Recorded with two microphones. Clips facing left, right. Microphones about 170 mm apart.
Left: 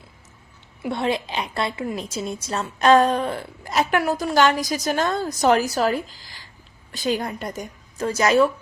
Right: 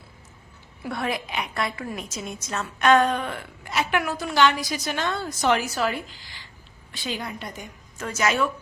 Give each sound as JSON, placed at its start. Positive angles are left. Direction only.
{"t": 0.8, "sound": "a woman's voice", "side_deg": 25}
{"t": 2.0, "sound": "a woman's voice", "side_deg": 30}